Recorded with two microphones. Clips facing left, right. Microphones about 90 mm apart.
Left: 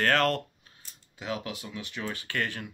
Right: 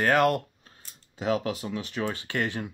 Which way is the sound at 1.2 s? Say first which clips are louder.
Right 8 dB; 30° right (ahead or behind).